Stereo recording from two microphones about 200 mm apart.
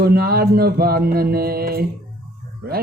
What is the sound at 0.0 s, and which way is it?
Speech, 50° right (ahead or behind).